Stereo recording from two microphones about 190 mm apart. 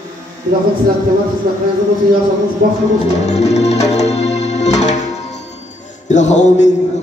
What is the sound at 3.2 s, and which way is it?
Organ, 35° left (ahead or behind).